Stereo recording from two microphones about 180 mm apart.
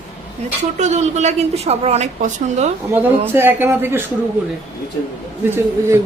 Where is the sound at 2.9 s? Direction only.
10° right (ahead or behind).